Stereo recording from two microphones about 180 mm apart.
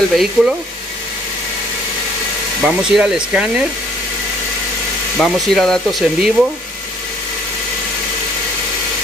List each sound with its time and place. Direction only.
0.1 s speech: centre (ahead or behind)
2.6 s speech: 5° right (ahead or behind)
5.2 s speech: centre (ahead or behind)